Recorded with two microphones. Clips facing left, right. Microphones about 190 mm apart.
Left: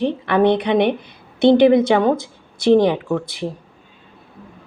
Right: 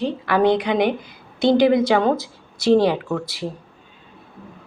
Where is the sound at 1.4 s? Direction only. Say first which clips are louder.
Left 4 dB; 60° left (ahead or behind).